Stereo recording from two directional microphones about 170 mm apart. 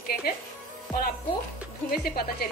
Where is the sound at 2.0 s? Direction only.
65° left (ahead or behind).